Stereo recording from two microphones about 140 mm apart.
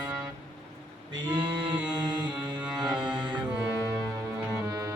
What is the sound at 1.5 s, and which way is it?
Music, 30° right (ahead or behind).